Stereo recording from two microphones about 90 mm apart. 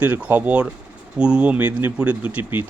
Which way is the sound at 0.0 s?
20° right (ahead or behind).